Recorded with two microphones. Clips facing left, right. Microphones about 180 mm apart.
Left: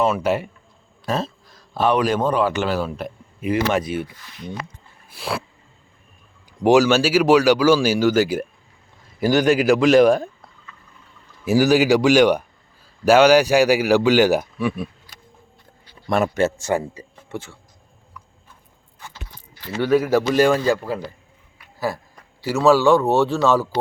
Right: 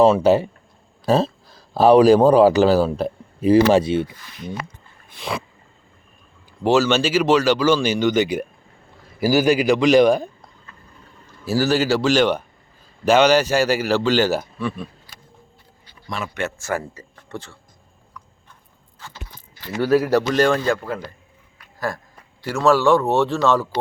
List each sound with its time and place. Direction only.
0.0 s speech: 30° right (ahead or behind)
5.0 s a sound: 5° left (ahead or behind)
6.6 s a man's voice: 15° left (ahead or behind)
11.4 s speech: 15° left (ahead or behind)
16.2 s speech: 40° left (ahead or behind)
16.6 s speech: 15° left (ahead or behind)
17.2 s a sound: 5° left (ahead or behind)
19.8 s a man's voice: 5° right (ahead or behind)
21.6 s a sound: 5° left (ahead or behind)
22.4 s a man's voice: 5° left (ahead or behind)